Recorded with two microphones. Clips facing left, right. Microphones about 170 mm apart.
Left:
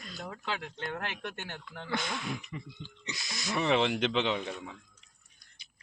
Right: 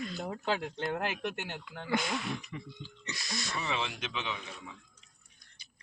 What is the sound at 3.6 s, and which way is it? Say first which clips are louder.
Speech: left 11 dB; 65° left (ahead or behind).